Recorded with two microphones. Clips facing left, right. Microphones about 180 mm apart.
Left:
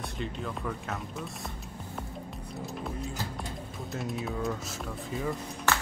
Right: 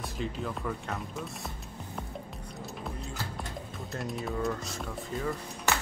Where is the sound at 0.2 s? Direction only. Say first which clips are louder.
Right 1 dB; centre (ahead or behind).